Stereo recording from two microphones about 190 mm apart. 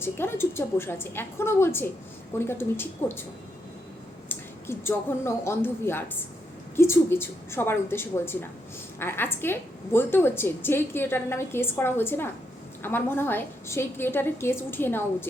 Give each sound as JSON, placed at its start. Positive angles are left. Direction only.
{"t": 0.0, "sound": "a woman's voice", "side_deg": 10}
{"t": 4.3, "sound": "a woman's voice", "side_deg": 10}